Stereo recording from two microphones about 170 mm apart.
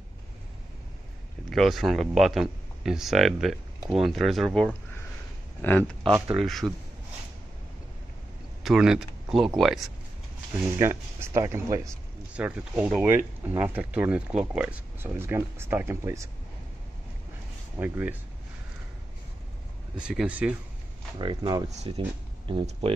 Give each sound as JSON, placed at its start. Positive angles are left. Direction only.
{"t": 1.5, "sound": "speech", "side_deg": 0}
{"t": 5.6, "sound": "speech", "side_deg": 10}
{"t": 8.6, "sound": "speech", "side_deg": -5}
{"t": 10.8, "sound": "speech", "side_deg": -15}
{"t": 12.4, "sound": "speech", "side_deg": -5}
{"t": 17.7, "sound": "speech", "side_deg": -10}
{"t": 20.0, "sound": "speech", "side_deg": -5}
{"t": 21.2, "sound": "speech", "side_deg": -25}